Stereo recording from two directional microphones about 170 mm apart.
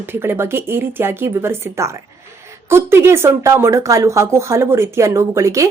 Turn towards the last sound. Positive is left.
turn(degrees=-15)  # may be behind; listen again after turning